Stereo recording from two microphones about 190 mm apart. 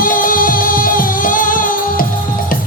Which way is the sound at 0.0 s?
45° left (ahead or behind).